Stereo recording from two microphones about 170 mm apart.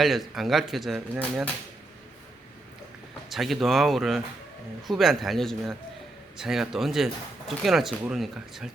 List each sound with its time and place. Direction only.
0.0 s speech: centre (ahead or behind)
3.2 s speech: centre (ahead or behind)